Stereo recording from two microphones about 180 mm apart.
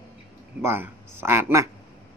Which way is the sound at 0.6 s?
10° right (ahead or behind).